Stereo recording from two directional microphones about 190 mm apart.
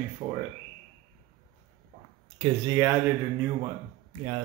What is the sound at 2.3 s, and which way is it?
Speech, 20° right (ahead or behind).